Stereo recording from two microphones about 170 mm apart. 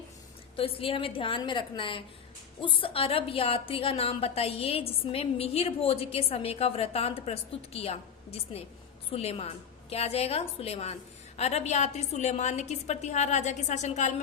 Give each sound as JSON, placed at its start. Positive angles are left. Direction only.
{"t": 0.5, "sound": "a woman's voice", "side_deg": 35}